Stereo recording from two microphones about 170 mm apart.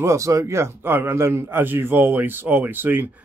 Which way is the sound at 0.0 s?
20° right (ahead or behind).